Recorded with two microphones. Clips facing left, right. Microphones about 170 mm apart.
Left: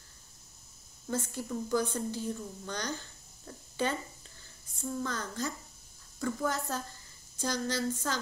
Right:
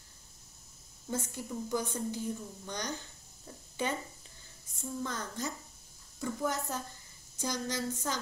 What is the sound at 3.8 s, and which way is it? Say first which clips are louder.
Speech: left 2 dB; 20° right (ahead or behind).